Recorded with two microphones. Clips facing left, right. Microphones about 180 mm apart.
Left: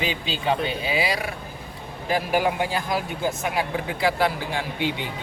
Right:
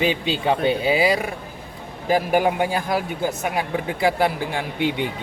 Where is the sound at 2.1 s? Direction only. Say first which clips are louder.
Right 4 dB; 50° right (ahead or behind).